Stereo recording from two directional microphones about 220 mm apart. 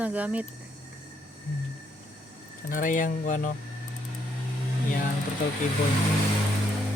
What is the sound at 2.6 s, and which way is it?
Speech, 35° left (ahead or behind).